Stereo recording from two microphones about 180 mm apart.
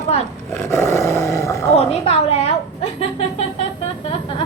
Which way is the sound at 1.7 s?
35° left (ahead or behind).